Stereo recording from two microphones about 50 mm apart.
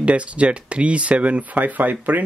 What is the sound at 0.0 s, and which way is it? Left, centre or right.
Speech, right.